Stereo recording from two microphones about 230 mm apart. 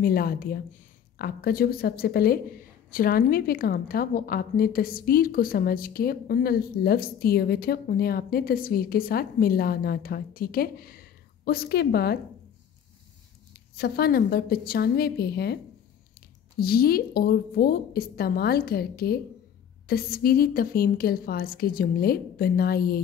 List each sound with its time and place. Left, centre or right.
0.0 s speech: left
13.7 s a woman's voice: left